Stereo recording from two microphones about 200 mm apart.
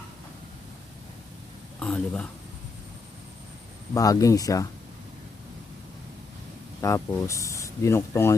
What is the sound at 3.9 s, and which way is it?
Speech, 15° left (ahead or behind).